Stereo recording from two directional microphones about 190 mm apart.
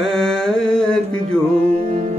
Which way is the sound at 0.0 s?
Centre (ahead or behind).